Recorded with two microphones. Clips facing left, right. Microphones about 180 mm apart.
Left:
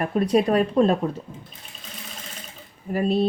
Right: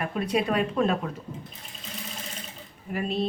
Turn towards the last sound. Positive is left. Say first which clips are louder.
# left 7 dB
turn(degrees=40)  # may be behind; listen again after turning